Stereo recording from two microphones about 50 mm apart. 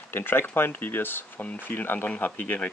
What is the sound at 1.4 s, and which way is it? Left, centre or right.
Speech, left.